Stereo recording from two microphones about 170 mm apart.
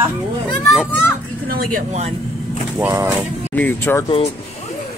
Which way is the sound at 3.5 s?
10° left (ahead or behind).